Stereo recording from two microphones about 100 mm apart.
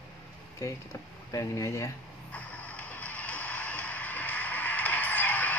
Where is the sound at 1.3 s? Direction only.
30° left (ahead or behind).